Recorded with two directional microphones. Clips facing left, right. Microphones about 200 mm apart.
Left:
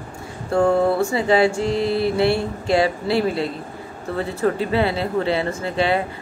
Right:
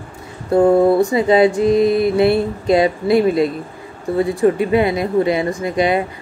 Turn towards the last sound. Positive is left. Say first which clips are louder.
# right 4 dB
turn(degrees=-15)  # may be behind; listen again after turning